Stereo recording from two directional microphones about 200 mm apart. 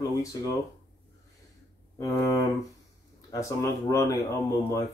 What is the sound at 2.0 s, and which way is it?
Speech, 15° left (ahead or behind).